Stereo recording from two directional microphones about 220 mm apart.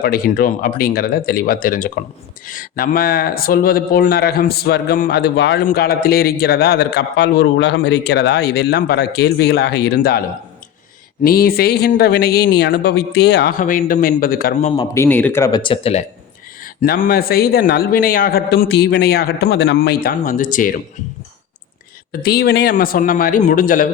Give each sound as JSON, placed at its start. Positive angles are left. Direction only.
{"t": 0.0, "sound": "a man's voice", "side_deg": 40}
{"t": 14.9, "sound": "speech", "side_deg": 10}
{"t": 16.8, "sound": "a man's voice", "side_deg": 40}
{"t": 22.2, "sound": "a man's voice", "side_deg": 45}